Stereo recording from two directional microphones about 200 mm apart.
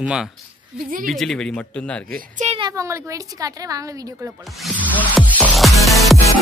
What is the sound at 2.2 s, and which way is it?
Speech, 40° right (ahead or behind).